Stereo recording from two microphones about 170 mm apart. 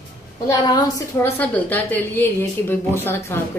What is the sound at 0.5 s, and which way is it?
A woman's voice, 20° left (ahead or behind).